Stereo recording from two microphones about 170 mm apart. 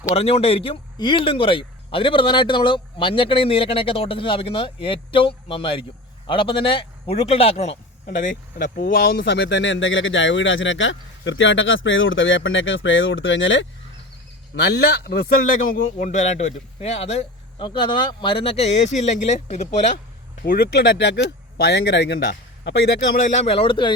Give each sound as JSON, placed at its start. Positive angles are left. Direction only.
{"t": 0.1, "sound": "speech", "side_deg": 35}
{"t": 8.0, "sound": "a man's voice", "side_deg": 55}
{"t": 17.7, "sound": "speech", "side_deg": 25}
{"t": 20.4, "sound": "speech", "side_deg": 65}
{"t": 23.3, "sound": "speech", "side_deg": 35}